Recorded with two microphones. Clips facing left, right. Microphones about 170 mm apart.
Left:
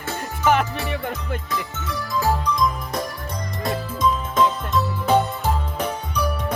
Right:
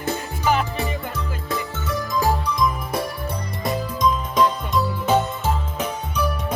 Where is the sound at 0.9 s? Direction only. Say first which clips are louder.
Left 1 dB; 60° left (ahead or behind).